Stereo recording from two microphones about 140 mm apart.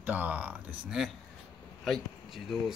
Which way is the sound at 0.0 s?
10° right (ahead or behind).